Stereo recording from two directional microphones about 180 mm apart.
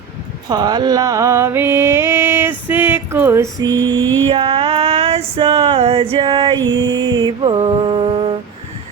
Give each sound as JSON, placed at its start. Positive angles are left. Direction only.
{"t": 0.4, "sound": "mantra", "side_deg": -20}
{"t": 3.8, "sound": "mantra", "side_deg": -90}
{"t": 4.3, "sound": "female singing", "side_deg": -30}